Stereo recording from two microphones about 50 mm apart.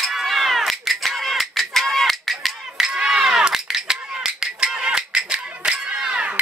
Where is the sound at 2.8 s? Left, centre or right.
Centre.